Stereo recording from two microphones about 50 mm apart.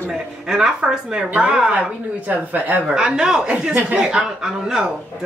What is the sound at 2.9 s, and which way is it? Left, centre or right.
Speech, centre.